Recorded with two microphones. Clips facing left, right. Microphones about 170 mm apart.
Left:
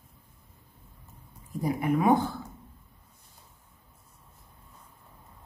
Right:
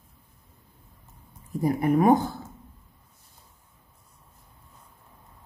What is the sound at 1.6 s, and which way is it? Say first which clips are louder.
Speech: right 5 dB; 45° right (ahead or behind).